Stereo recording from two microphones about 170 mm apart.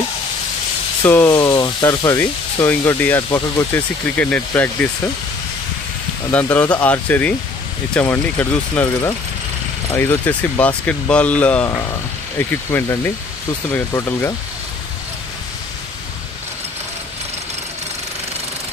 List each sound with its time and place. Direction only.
1.0 s speech: 15° left (ahead or behind)
3.7 s speech: 10° left (ahead or behind)
6.3 s speech: 10° left (ahead or behind)